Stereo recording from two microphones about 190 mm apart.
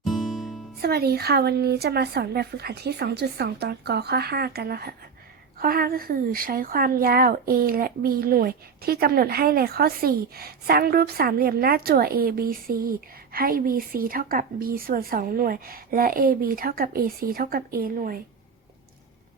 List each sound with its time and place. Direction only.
0.0 s music: centre (ahead or behind)
0.8 s a woman's voice: 55° right (ahead or behind)